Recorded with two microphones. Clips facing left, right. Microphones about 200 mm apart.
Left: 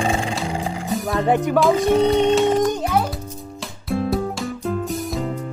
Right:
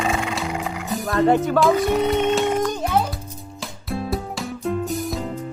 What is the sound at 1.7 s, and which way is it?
Speech, 30° left (ahead or behind).